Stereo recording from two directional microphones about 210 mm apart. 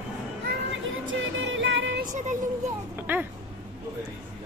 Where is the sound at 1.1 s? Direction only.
65° right (ahead or behind).